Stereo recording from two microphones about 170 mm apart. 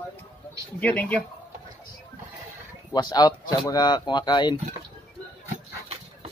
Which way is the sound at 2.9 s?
25° left (ahead or behind).